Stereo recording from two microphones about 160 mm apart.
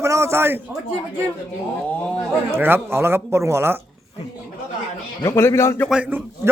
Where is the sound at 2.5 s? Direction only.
15° right (ahead or behind).